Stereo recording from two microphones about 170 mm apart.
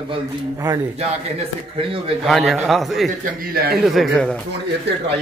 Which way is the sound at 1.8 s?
30° right (ahead or behind).